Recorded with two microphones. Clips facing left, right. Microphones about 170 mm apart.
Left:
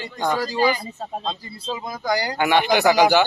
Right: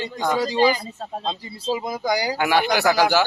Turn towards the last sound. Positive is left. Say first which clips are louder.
# left 2 dB
turn(degrees=0)  # may be behind; listen again after turning